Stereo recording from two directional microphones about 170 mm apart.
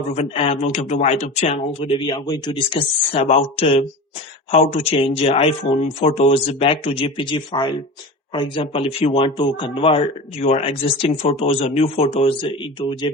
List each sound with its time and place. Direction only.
0.1 s speech: 40° left (ahead or behind)